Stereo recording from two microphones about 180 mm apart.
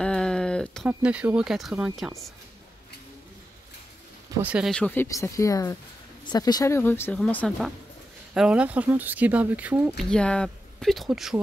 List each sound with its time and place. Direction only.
0.0 s a sound: 5° left (ahead or behind)
0.8 s speech: 5° right (ahead or behind)
4.4 s speech: 5° right (ahead or behind)
4.7 s speech: 5° left (ahead or behind)
5.0 s speech: 20° left (ahead or behind)
8.4 s speech: 5° right (ahead or behind)
9.9 s speech: 5° left (ahead or behind)